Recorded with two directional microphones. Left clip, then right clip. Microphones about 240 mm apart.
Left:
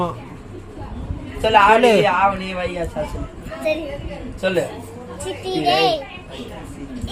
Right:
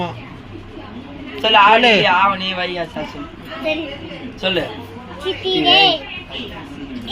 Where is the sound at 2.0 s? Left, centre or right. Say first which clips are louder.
Right 3 dB; left.